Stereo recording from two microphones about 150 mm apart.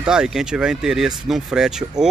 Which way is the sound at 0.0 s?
5° right (ahead or behind).